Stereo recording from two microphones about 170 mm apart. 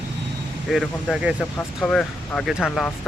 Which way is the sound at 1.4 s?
10° left (ahead or behind).